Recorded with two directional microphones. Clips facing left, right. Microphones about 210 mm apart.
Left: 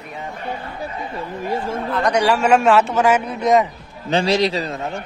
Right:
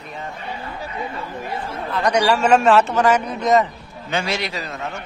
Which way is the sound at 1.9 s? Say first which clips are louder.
Even; centre (ahead or behind).